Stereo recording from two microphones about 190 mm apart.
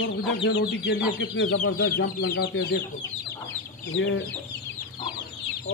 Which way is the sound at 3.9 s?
80° left.